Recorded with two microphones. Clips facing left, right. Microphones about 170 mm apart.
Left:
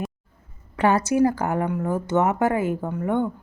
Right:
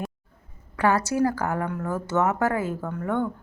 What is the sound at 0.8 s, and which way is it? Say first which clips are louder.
Speech: left 3 dB; 20° left (ahead or behind).